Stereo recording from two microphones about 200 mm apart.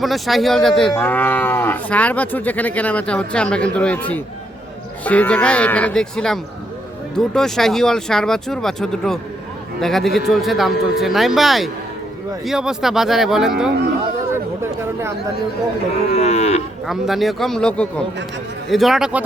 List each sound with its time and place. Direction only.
0.0 s speech: centre (ahead or behind)
16.1 s livestock: 30° left (ahead or behind)
16.8 s speech: centre (ahead or behind)